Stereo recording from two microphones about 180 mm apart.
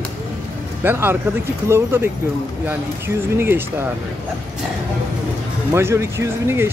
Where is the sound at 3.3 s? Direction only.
10° right (ahead or behind).